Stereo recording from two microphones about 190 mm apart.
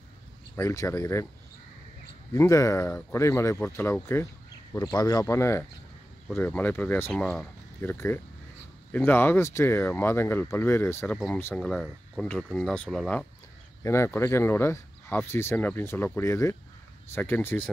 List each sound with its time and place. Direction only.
0.6 s speech: 15° left (ahead or behind)
2.3 s speech: 15° left (ahead or behind)
13.8 s speech: 15° left (ahead or behind)